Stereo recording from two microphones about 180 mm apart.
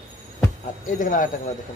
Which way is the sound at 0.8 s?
45° left (ahead or behind).